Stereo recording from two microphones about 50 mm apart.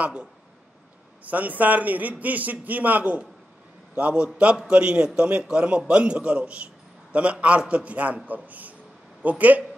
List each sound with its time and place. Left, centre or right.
0.0 s a man's voice: right
1.3 s a man's voice: right